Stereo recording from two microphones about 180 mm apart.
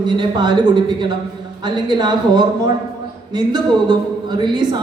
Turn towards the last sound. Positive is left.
turn(degrees=-25)  # may be behind; listen again after turning